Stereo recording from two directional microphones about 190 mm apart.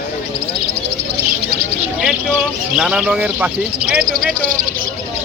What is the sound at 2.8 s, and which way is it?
Speech, 5° right (ahead or behind).